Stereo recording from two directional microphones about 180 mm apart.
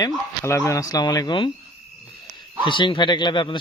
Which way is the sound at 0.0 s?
15° left (ahead or behind).